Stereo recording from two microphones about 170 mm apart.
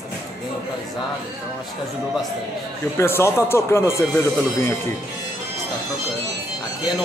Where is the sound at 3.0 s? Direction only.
15° left (ahead or behind).